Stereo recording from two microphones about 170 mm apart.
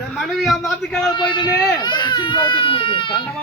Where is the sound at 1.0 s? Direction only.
25° left (ahead or behind).